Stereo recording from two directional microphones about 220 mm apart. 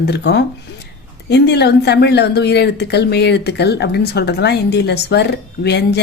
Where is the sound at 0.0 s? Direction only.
50° left (ahead or behind).